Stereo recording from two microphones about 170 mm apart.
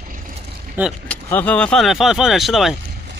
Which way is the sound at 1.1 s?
10° left (ahead or behind).